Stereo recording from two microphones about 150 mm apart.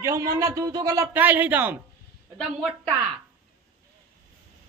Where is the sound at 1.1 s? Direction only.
10° right (ahead or behind).